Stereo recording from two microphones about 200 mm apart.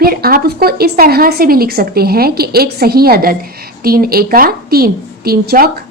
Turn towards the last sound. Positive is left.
turn(degrees=-50)  # may be behind; listen again after turning